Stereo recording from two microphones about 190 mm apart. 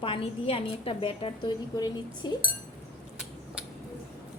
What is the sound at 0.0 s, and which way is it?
A woman's voice, 30° left (ahead or behind).